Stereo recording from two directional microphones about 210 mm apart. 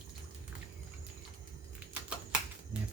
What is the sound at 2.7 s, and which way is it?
Music, 5° right (ahead or behind).